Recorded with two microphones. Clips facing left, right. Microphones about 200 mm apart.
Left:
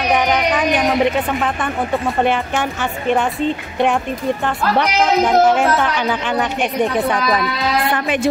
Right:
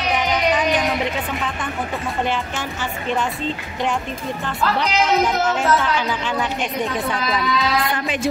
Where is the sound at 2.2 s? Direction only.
60° left (ahead or behind).